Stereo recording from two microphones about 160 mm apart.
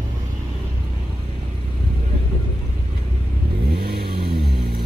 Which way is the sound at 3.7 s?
80° right.